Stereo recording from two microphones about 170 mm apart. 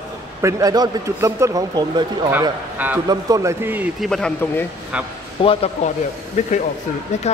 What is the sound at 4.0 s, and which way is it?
Speech, 5° left (ahead or behind).